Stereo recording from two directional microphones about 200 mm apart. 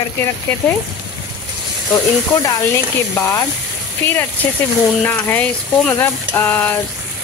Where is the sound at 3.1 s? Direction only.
15° left (ahead or behind).